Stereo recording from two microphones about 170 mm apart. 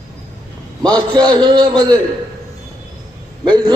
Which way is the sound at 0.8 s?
25° right (ahead or behind).